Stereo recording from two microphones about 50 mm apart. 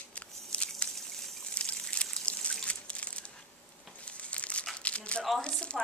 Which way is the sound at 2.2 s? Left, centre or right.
Left.